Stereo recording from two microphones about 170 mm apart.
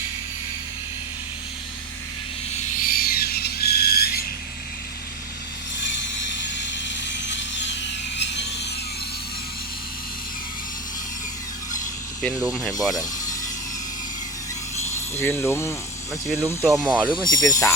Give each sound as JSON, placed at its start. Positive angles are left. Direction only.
{"t": 2.6, "sound": "a sound", "side_deg": 60}
{"t": 6.3, "sound": "sawing", "side_deg": 90}
{"t": 12.4, "sound": "speech", "side_deg": -5}
{"t": 14.8, "sound": "a sound", "side_deg": 15}
{"t": 16.4, "sound": "speech", "side_deg": -20}
{"t": 16.7, "sound": "speech", "side_deg": -5}
{"t": 17.2, "sound": "speech", "side_deg": 20}